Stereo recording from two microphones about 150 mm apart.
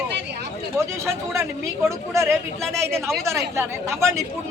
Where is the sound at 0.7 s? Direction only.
20° right (ahead or behind).